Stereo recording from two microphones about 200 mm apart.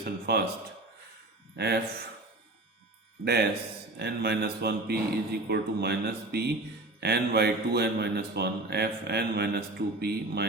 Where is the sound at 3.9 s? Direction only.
55° right (ahead or behind).